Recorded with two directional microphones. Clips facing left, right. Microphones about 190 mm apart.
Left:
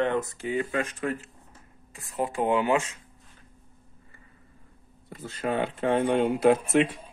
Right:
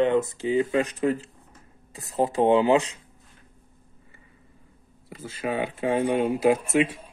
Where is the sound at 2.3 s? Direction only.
30° right (ahead or behind).